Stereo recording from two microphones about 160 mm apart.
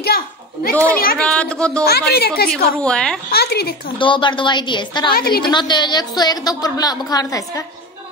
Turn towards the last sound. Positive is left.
turn(degrees=25)  # may be behind; listen again after turning